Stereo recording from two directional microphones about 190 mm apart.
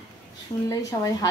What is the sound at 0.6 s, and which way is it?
Speech, 20° left (ahead or behind).